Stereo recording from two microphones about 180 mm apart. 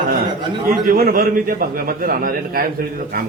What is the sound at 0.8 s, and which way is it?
A man's voice, 55° right (ahead or behind).